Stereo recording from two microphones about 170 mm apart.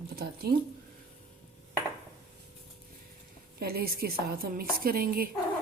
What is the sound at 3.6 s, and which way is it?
A woman's voice, 65° right (ahead or behind).